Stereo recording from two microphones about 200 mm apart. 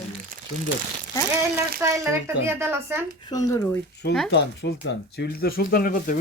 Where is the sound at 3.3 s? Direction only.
20° left (ahead or behind).